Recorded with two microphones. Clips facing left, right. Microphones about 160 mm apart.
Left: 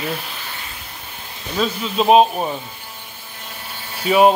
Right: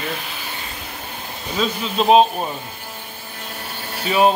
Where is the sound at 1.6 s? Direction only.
5° left (ahead or behind).